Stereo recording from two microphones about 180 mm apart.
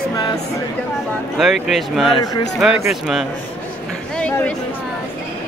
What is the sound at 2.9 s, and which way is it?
Speech, centre (ahead or behind).